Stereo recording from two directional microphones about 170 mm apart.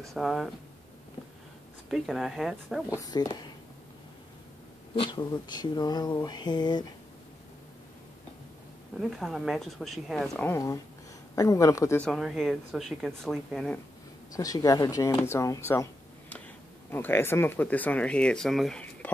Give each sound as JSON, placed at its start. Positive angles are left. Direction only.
{"t": 0.1, "sound": "speech", "side_deg": 0}
{"t": 1.9, "sound": "speech", "side_deg": 0}
{"t": 2.9, "sound": "speech", "side_deg": 20}
{"t": 4.9, "sound": "speech", "side_deg": 25}
{"t": 9.0, "sound": "speech", "side_deg": 0}
{"t": 12.0, "sound": "speech", "side_deg": 0}
{"t": 14.3, "sound": "speech", "side_deg": 20}